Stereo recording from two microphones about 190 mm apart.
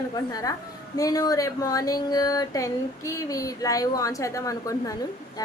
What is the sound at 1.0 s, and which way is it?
Speech, 20° left (ahead or behind).